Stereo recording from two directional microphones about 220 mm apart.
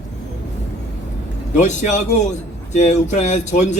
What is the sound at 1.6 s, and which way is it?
Speech, 35° left (ahead or behind).